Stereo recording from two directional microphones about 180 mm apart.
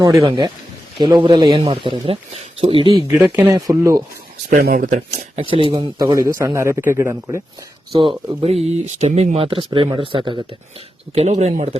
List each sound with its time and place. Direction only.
0.0 s speech: 20° right (ahead or behind)
3.3 s speech: 15° right (ahead or behind)
4.4 s speech: 50° right (ahead or behind); by 7.4 s 15° right (ahead or behind)
7.9 s speech: 30° right (ahead or behind)